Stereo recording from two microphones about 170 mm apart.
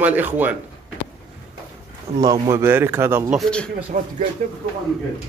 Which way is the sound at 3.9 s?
45° right (ahead or behind).